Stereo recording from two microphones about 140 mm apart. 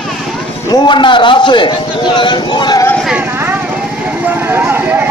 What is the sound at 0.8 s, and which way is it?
A man's voice, 35° left (ahead or behind).